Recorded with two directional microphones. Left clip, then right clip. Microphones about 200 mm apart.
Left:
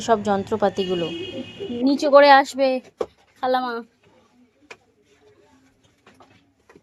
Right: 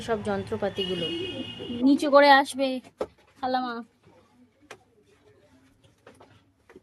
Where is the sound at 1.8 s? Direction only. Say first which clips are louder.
Left 5 dB; 5° left (ahead or behind).